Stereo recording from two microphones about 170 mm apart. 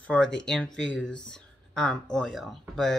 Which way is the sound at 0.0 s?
5° left (ahead or behind).